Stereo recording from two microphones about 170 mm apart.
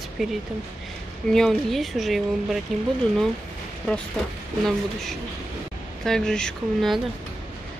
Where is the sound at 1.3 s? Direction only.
Centre (ahead or behind).